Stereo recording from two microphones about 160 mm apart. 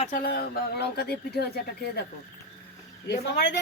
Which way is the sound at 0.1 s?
70° left (ahead or behind).